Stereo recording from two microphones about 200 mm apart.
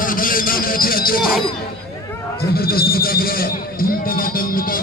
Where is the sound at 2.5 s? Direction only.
50° left (ahead or behind).